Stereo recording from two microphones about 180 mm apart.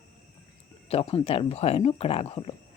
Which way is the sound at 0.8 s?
35° left (ahead or behind).